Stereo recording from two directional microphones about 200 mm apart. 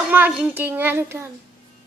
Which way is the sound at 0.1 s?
5° right (ahead or behind).